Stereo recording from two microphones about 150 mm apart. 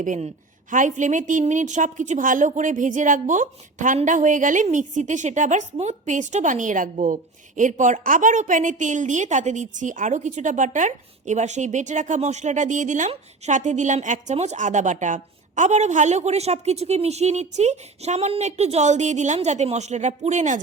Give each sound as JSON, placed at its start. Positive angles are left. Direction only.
{"t": 0.0, "sound": "a woman's voice", "side_deg": -60}